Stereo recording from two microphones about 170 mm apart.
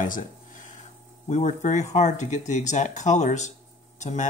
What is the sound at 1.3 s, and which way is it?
Speech, 45° left (ahead or behind).